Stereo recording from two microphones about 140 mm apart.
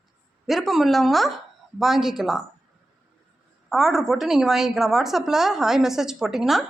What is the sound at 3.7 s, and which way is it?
A woman's voice, centre (ahead or behind).